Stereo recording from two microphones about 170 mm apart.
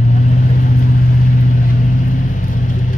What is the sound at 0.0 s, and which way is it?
Vehicle, 45° left (ahead or behind).